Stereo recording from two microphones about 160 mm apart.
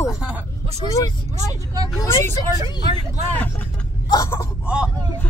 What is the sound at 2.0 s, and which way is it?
Speech, 20° left (ahead or behind).